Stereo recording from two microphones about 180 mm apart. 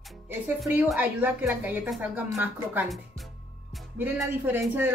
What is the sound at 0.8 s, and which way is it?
A woman's voice, 10° right (ahead or behind).